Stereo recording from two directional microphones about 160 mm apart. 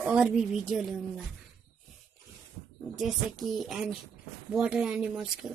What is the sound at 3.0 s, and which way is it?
Speech, centre (ahead or behind).